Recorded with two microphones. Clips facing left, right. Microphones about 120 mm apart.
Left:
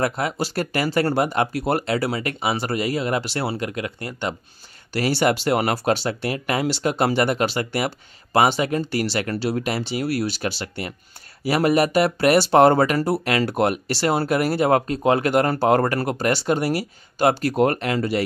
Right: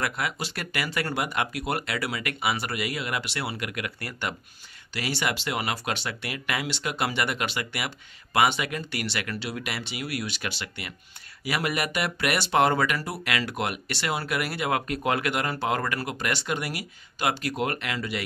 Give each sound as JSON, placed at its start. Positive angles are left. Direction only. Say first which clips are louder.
{"t": 0.0, "sound": "speech", "louder": "left 7 dB", "side_deg": 35}
{"t": 4.9, "sound": "speech", "louder": "left 9 dB", "side_deg": 40}